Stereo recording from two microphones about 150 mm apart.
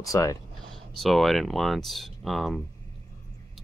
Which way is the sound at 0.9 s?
Centre (ahead or behind).